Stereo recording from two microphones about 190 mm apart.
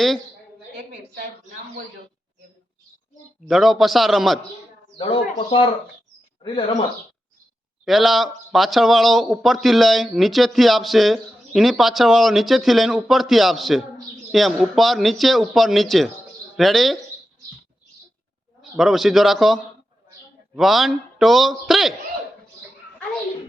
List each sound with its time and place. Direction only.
3.5 s speech: centre (ahead or behind)
4.9 s speech: 25° left (ahead or behind)
7.9 s speech: centre (ahead or behind)
18.8 s speech: centre (ahead or behind)
20.6 s speech: centre (ahead or behind)